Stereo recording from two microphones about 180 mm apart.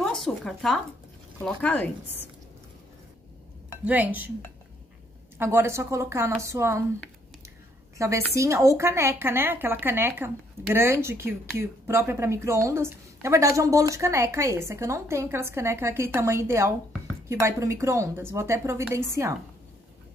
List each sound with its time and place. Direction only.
0.0 s a sound: centre (ahead or behind)
1.4 s a woman's voice: 5° left (ahead or behind)
3.8 s a woman's voice: 10° right (ahead or behind)
5.4 s a woman's voice: 15° right (ahead or behind)
8.0 s a woman's voice: 15° right (ahead or behind)